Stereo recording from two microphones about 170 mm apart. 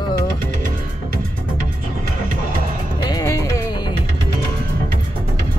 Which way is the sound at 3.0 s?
20° left (ahead or behind).